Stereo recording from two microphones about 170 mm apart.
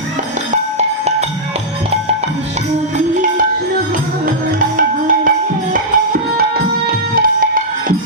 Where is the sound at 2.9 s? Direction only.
50° right (ahead or behind).